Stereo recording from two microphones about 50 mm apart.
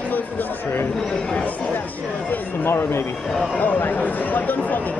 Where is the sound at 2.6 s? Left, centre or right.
Left.